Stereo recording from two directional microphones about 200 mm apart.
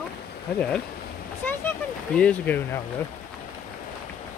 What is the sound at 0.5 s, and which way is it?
Speech, 5° left (ahead or behind).